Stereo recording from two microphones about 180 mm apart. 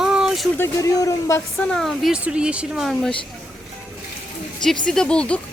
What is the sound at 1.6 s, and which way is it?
Speech, 5° left (ahead or behind).